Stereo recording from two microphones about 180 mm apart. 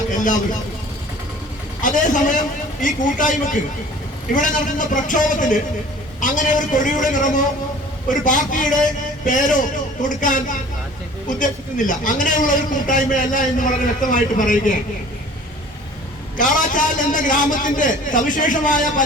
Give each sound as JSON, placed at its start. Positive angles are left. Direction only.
{"t": 1.8, "sound": "a man's voice", "side_deg": 45}
{"t": 16.4, "sound": "a man's voice", "side_deg": 45}